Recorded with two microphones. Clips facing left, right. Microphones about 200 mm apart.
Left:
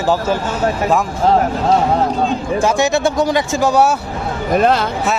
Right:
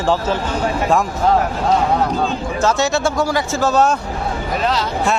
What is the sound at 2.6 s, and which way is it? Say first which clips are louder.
Speech: left 1 dB; 15° left (ahead or behind).